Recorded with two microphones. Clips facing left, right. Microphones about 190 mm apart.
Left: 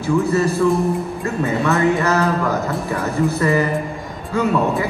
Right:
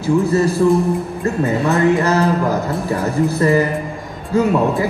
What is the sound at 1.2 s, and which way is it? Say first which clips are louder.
Music: right 3 dB; 35° right (ahead or behind).